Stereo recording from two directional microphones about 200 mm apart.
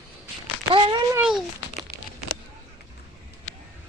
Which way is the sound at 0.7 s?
25° right (ahead or behind).